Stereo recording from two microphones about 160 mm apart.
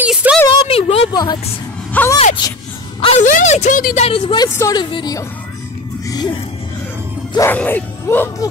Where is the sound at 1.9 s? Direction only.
10° left (ahead or behind).